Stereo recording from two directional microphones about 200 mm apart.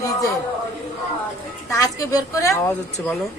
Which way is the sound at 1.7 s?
15° left (ahead or behind).